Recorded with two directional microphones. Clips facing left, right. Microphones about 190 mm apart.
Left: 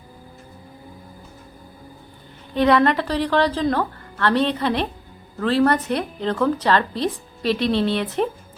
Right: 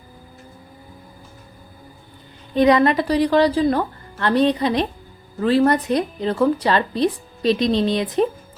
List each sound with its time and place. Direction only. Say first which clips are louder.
2.6 s a woman's voice: right 2 dB; 15° right (ahead or behind)